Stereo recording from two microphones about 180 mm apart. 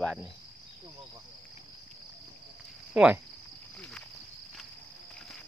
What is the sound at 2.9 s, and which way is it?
Speech, 5° right (ahead or behind).